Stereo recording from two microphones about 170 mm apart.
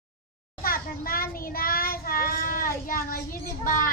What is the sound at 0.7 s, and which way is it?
Child singing, 60° left (ahead or behind).